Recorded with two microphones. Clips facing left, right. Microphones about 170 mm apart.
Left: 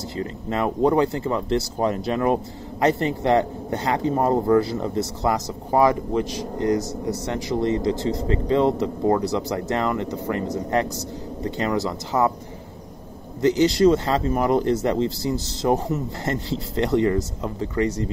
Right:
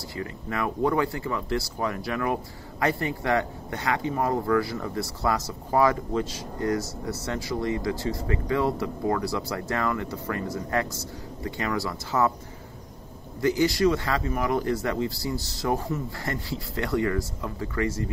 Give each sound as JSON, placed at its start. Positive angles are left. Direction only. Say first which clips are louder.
{"t": 0.1, "sound": "speech", "louder": "left 5 dB", "side_deg": 25}
{"t": 13.4, "sound": "speech", "louder": "left 5 dB", "side_deg": 20}